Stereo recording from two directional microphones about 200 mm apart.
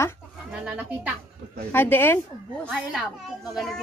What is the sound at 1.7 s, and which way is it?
Speech, 10° left (ahead or behind).